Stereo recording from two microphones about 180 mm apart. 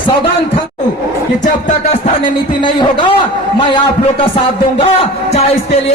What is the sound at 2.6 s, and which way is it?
Speech, 25° left (ahead or behind).